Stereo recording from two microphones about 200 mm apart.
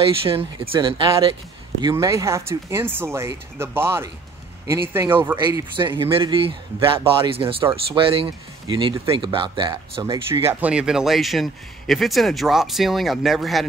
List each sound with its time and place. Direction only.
0.2 s speech: 25° right (ahead or behind); by 5.6 s 10° right (ahead or behind)
5.8 s speech: 25° right (ahead or behind)
10.4 s speech: 5° right (ahead or behind)